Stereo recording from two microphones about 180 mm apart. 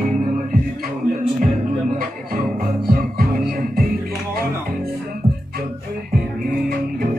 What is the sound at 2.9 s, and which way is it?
Music, 55° right (ahead or behind).